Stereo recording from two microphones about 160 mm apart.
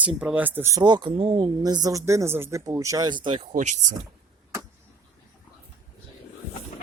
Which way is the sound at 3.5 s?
50° right (ahead or behind).